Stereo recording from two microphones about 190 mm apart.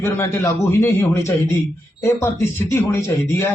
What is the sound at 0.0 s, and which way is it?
Speech, 15° left (ahead or behind).